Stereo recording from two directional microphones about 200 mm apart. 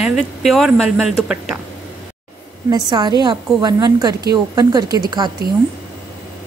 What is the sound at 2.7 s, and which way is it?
A woman's voice, 20° right (ahead or behind).